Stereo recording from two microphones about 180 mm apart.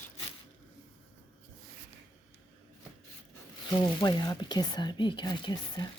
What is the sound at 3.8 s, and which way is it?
Speech, 25° left (ahead or behind).